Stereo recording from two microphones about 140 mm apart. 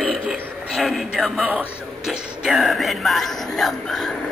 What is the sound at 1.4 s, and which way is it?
Speech, 5° right (ahead or behind).